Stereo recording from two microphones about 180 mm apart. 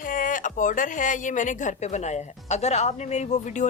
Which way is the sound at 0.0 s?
50° left (ahead or behind).